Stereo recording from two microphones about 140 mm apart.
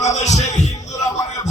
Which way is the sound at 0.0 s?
55° left (ahead or behind).